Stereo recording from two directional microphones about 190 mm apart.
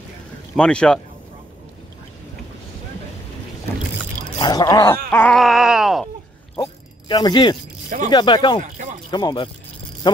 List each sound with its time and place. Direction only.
0.6 s speech: 5° left (ahead or behind)
4.4 s speech: 20° left (ahead or behind)
5.1 s groan: 5° left (ahead or behind)
6.6 s zipper: 25° left (ahead or behind)
8.1 s speech: 25° left (ahead or behind)
10.0 s a sound: 25° left (ahead or behind)